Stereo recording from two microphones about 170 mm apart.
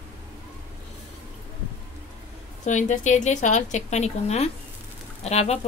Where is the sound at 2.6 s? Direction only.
45° left (ahead or behind).